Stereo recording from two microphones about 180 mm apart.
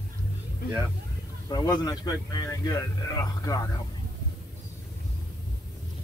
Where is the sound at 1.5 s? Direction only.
20° left (ahead or behind).